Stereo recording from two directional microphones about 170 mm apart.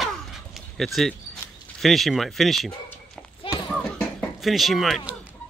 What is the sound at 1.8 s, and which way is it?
Speech, centre (ahead or behind).